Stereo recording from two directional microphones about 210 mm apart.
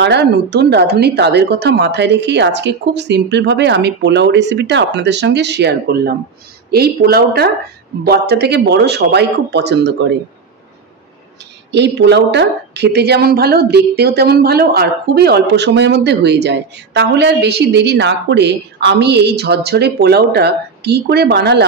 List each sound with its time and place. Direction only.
0.0 s a woman's voice: 50° right (ahead or behind)
11.7 s speech: 55° right (ahead or behind)